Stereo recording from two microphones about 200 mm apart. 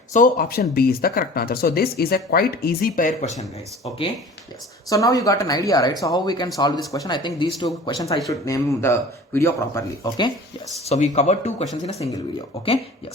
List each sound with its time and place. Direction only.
0.1 s speech: 45° left (ahead or behind)
4.9 s speech: 15° left (ahead or behind)
10.8 s speech: 35° left (ahead or behind)